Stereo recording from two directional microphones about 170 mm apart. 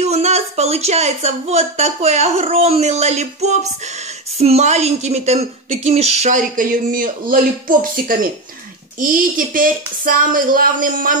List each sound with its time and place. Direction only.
0.0 s a woman's voice: 40° right (ahead or behind)